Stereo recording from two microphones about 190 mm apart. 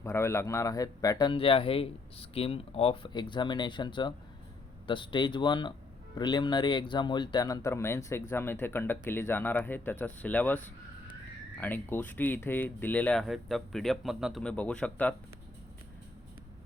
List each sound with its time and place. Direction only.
0.0 s a man's voice: 15° left (ahead or behind)
11.6 s speech: 10° left (ahead or behind)